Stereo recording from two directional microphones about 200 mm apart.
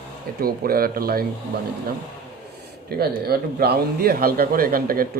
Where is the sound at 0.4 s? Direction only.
50° right (ahead or behind).